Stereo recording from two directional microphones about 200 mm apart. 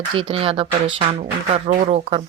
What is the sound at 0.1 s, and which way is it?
Speech, 25° right (ahead or behind).